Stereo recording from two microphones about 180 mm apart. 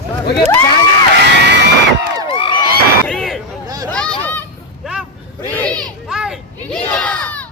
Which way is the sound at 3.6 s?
20° right (ahead or behind).